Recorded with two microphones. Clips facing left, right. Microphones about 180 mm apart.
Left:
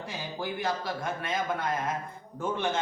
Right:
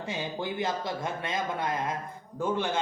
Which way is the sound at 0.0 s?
25° right (ahead or behind).